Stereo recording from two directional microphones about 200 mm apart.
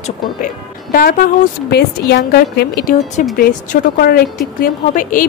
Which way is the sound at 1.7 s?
55° left (ahead or behind).